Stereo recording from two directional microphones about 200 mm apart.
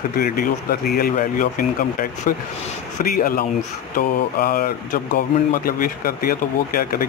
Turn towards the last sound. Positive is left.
turn(degrees=45)  # may be behind; listen again after turning